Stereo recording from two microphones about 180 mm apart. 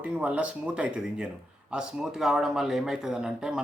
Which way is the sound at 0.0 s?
5° right (ahead or behind).